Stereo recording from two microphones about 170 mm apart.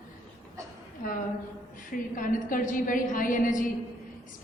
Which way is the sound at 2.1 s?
50° left (ahead or behind).